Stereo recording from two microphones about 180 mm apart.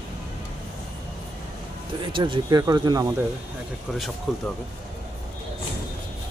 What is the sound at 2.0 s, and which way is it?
Speech, 25° right (ahead or behind).